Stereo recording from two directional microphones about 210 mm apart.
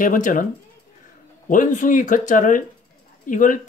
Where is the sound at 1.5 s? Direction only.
40° left (ahead or behind).